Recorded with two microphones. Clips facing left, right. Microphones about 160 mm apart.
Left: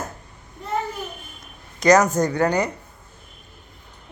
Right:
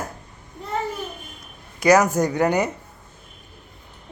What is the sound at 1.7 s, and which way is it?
Speech, 10° right (ahead or behind).